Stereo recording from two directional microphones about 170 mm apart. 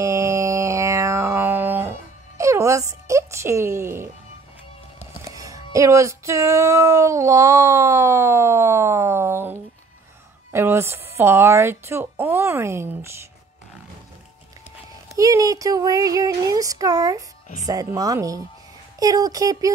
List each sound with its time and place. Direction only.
0.0 s music: 15° right (ahead or behind)
5.2 s music: 20° right (ahead or behind)
10.5 s speech: 15° right (ahead or behind)
15.0 s speech: 20° right (ahead or behind)